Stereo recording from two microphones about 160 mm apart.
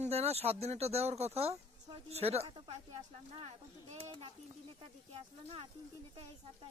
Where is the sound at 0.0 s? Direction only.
40° right (ahead or behind).